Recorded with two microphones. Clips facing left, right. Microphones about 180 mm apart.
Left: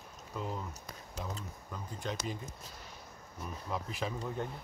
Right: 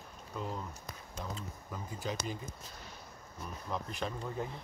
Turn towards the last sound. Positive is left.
turn(degrees=0)  # may be behind; listen again after turning